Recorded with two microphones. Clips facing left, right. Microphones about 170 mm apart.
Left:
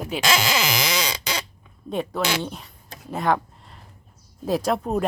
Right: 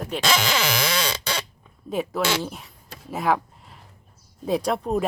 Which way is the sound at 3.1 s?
Centre (ahead or behind).